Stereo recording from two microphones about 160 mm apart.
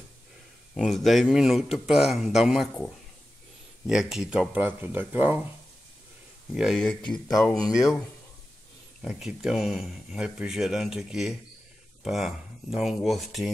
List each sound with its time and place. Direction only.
0.7 s speech: centre (ahead or behind)
3.8 s speech: 5° right (ahead or behind)
6.5 s speech: centre (ahead or behind)
7.3 s speech: 20° left (ahead or behind)
9.0 s speech: centre (ahead or behind)